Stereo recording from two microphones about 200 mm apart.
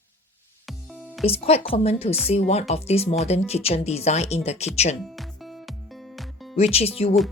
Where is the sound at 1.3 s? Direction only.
30° left (ahead or behind).